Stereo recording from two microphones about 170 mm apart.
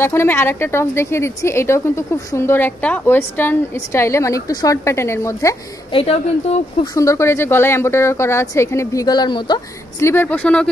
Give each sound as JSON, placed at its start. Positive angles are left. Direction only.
{"t": 0.0, "sound": "a woman's voice", "side_deg": 15}
{"t": 5.9, "sound": "speech", "side_deg": 35}
{"t": 6.9, "sound": "a woman's voice", "side_deg": 20}